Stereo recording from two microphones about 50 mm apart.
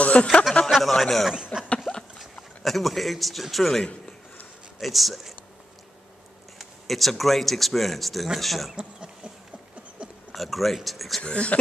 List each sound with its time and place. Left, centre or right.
0.0 s speech: left
0.7 s speech: centre
1.3 s a sound: centre
2.6 s speech: centre
6.6 s speech: centre
8.7 s a sound: centre
10.3 s speech: centre
11.2 s speech: left